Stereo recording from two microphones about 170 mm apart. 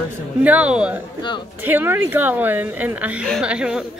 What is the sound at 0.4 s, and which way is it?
A woman's voice, 10° right (ahead or behind).